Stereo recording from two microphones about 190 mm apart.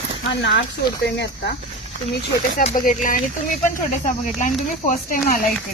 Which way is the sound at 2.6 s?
40° left (ahead or behind).